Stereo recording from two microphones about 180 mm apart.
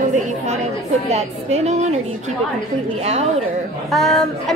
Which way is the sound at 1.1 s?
40° right (ahead or behind).